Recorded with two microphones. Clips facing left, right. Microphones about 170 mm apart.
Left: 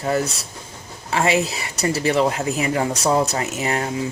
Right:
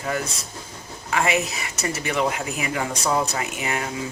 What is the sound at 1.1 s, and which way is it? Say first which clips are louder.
Speech: left 3 dB; 30° left (ahead or behind).